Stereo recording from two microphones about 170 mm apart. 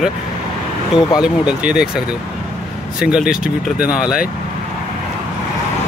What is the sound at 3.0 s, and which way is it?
Speech, 5° right (ahead or behind).